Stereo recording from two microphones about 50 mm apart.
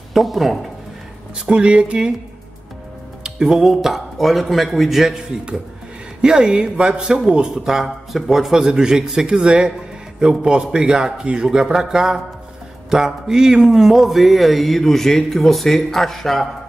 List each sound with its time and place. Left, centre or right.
0.1 s speech: centre
1.4 s speech: right
3.3 s a man's voice: centre